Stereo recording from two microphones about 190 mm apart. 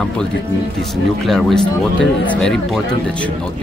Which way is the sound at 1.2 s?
Centre (ahead or behind).